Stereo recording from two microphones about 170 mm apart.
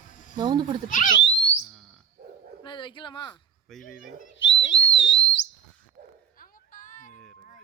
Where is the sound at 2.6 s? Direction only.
30° left (ahead or behind).